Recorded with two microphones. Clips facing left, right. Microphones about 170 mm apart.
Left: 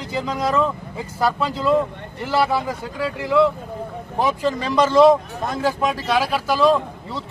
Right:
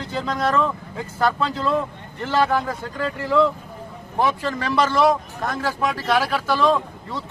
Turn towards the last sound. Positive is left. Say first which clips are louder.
# left 2 dB
turn(degrees=10)  # may be behind; listen again after turning